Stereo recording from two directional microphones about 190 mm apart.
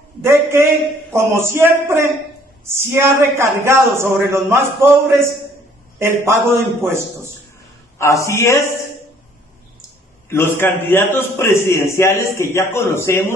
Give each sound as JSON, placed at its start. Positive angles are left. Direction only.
{"t": 0.2, "sound": "a man's voice", "side_deg": -15}
{"t": 8.0, "sound": "a man's voice", "side_deg": 15}
{"t": 10.3, "sound": "a man's voice", "side_deg": 10}